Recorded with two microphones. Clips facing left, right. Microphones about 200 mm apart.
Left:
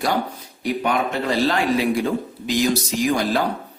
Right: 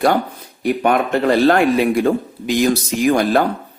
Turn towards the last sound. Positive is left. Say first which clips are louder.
# right 5 dB
turn(degrees=-55)  # may be behind; listen again after turning